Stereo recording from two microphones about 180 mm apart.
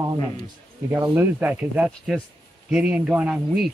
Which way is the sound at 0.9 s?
15° right (ahead or behind).